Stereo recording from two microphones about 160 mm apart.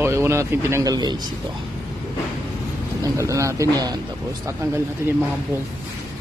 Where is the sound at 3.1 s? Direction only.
20° right (ahead or behind).